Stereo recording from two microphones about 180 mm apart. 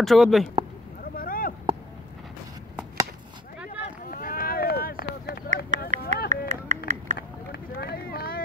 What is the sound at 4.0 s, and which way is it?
Run, 50° left (ahead or behind).